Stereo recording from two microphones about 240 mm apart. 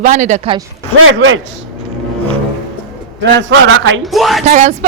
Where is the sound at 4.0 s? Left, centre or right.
Centre.